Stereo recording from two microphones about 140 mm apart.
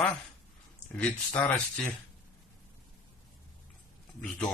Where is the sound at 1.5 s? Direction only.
5° left (ahead or behind).